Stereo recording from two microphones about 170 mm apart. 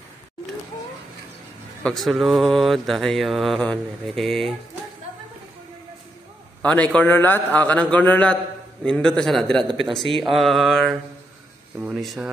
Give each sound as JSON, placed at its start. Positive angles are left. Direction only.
{"t": 1.8, "sound": "mantra", "side_deg": 5}
{"t": 6.6, "sound": "a man's voice", "side_deg": 10}
{"t": 8.8, "sound": "mantra", "side_deg": 5}